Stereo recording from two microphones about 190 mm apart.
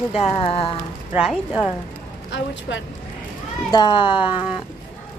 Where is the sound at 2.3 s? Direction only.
75° left (ahead or behind).